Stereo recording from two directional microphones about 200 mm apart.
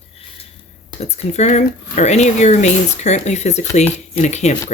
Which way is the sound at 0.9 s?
35° left (ahead or behind).